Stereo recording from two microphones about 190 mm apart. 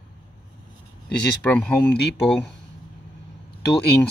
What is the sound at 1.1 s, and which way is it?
Speech, 5° left (ahead or behind).